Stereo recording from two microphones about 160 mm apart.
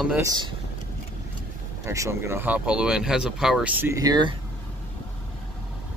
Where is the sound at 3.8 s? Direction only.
20° right (ahead or behind).